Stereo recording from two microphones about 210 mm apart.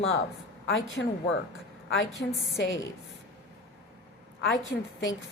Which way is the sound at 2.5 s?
60° left (ahead or behind).